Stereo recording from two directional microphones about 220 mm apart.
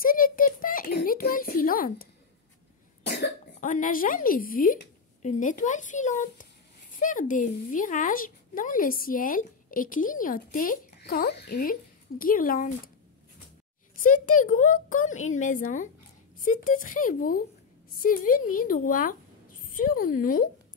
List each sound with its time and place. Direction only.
0.0 s a sound: 40° left (ahead or behind)
3.0 s cough: 50° left (ahead or behind)
3.7 s speech: 40° left (ahead or behind)
13.9 s speech: 35° left (ahead or behind)